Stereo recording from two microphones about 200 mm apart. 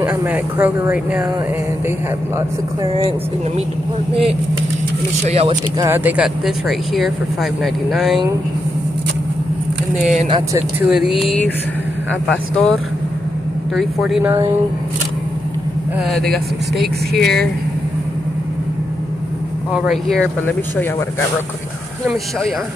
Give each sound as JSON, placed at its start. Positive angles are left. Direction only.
{"t": 0.0, "sound": "speech", "side_deg": -10}
{"t": 2.8, "sound": "speech", "side_deg": -25}
{"t": 4.1, "sound": "speech", "side_deg": -30}
{"t": 5.8, "sound": "speech", "side_deg": -10}
{"t": 9.9, "sound": "speech", "side_deg": -35}
{"t": 10.5, "sound": "speech", "side_deg": -5}
{"t": 13.7, "sound": "speech", "side_deg": 0}
{"t": 16.1, "sound": "speech", "side_deg": 0}
{"t": 19.7, "sound": "speech", "side_deg": 0}